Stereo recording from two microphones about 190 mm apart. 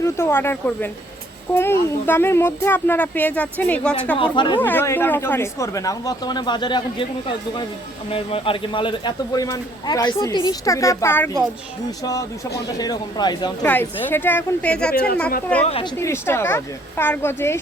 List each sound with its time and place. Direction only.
0.0 s speech: 15° left (ahead or behind)
4.2 s speech: 25° left (ahead or behind)
4.6 s speech: 10° left (ahead or behind)
8.1 s speech: 30° left (ahead or behind); by 11.3 s 10° left (ahead or behind)
12.6 s speech: 20° left (ahead or behind)
13.7 s speech: 10° left (ahead or behind)
14.9 s speech: 50° left (ahead or behind)
15.6 s a woman's voice: 30° left (ahead or behind)
16.0 s speech: 15° left (ahead or behind)